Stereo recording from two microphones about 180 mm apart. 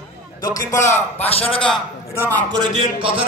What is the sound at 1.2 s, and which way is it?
Speech, 35° left (ahead or behind).